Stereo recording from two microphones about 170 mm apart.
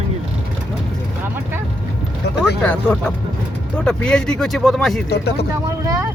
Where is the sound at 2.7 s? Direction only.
10° left (ahead or behind).